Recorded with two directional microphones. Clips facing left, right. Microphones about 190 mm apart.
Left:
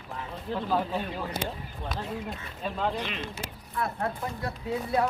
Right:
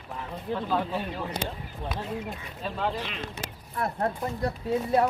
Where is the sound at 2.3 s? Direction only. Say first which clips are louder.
Even; centre (ahead or behind).